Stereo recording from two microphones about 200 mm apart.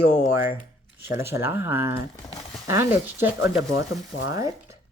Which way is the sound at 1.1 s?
10° right (ahead or behind).